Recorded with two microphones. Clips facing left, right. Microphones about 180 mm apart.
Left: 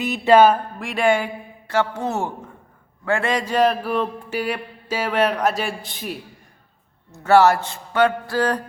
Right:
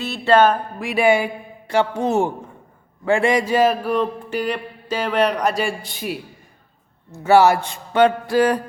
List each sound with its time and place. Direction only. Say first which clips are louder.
0.0 s a sound: left 2 dB; 15° left (ahead or behind)
0.8 s speech: right 6 dB; 5° right (ahead or behind)
7.1 s speech: right 1 dB; 10° right (ahead or behind)